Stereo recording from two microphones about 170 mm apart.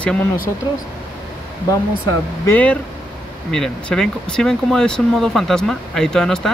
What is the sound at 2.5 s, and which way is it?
Speech, 10° left (ahead or behind).